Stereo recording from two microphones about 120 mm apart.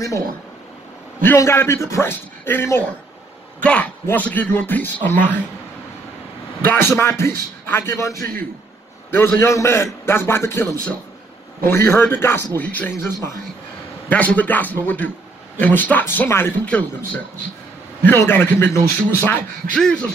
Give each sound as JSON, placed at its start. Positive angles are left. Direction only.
{"t": 1.2, "sound": "a man's voice", "side_deg": 20}
{"t": 6.7, "sound": "a man's voice", "side_deg": 20}
{"t": 16.6, "sound": "a man's voice", "side_deg": 10}